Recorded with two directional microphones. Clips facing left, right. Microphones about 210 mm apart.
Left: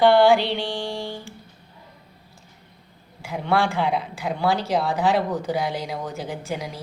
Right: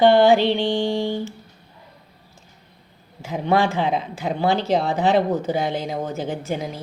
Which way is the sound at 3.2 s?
20° right (ahead or behind).